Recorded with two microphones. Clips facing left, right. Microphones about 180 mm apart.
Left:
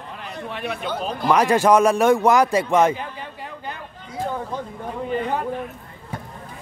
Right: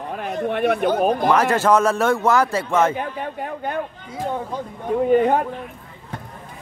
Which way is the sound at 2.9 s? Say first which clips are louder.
Right 6 dB; 55° right (ahead or behind).